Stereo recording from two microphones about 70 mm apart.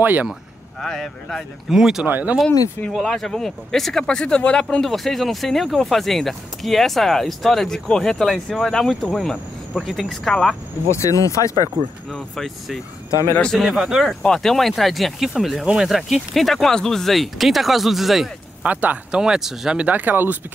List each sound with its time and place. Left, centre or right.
0.0 s speech: right
0.7 s speech: centre
1.7 s speech: centre
2.0 s speech: right
2.9 s speech: centre
10.9 s speech: left
13.6 s speech: centre
14.2 s speech: centre
15.6 s speech: centre
15.9 s speech: centre
18.6 s speech: right
19.2 s speech: centre
19.9 s speech: right